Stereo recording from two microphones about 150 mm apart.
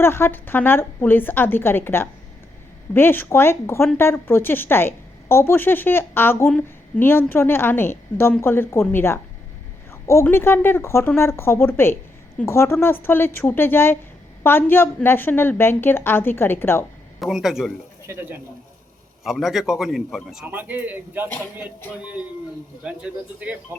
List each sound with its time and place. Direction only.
0.0 s a woman's voice: 15° left (ahead or behind)
17.2 s a man's voice: centre (ahead or behind)
18.1 s speech: 15° right (ahead or behind)
19.2 s a man's voice: centre (ahead or behind)